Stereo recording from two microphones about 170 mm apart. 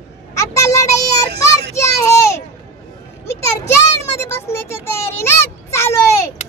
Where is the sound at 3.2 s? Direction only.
15° left (ahead or behind).